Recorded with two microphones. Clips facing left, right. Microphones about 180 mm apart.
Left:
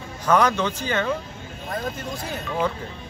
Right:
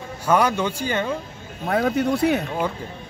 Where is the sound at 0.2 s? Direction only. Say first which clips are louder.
Even; 10° right (ahead or behind).